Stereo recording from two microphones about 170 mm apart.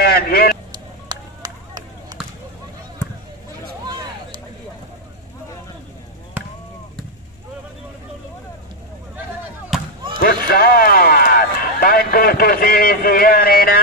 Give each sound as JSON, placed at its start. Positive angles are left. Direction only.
{"t": 0.0, "sound": "vehicle", "side_deg": 65}
{"t": 1.0, "sound": "a sound", "side_deg": -25}
{"t": 10.2, "sound": "run", "side_deg": 60}